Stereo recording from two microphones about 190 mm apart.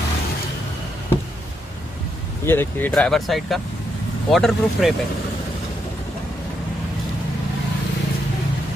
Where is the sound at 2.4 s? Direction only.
10° left (ahead or behind).